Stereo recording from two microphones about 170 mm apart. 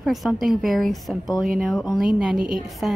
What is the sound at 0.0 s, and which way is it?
A woman's voice, centre (ahead or behind).